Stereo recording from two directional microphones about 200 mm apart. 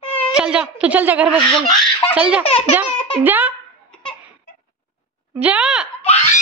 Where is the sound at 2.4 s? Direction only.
30° left (ahead or behind).